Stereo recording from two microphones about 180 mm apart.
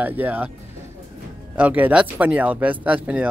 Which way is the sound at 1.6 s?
10° right (ahead or behind).